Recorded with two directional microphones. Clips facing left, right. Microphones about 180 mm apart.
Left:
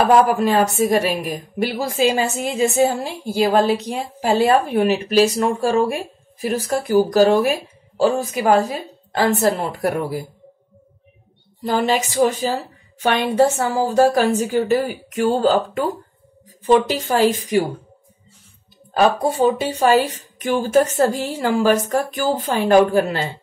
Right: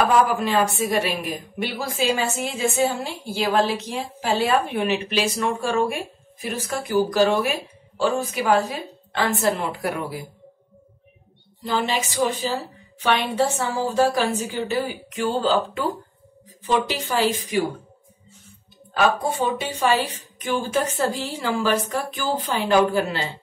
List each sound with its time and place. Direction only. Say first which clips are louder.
0.3 s a woman's voice: left 4 dB; 45° left (ahead or behind)
11.6 s a woman's voice: left 5 dB; 45° left (ahead or behind)
18.9 s a woman's voice: left 5 dB; 35° left (ahead or behind)